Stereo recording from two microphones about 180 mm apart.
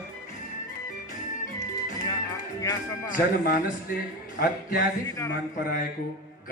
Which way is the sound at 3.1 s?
50° left (ahead or behind).